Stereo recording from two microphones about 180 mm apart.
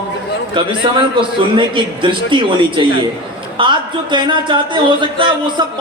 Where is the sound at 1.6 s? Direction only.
25° right (ahead or behind).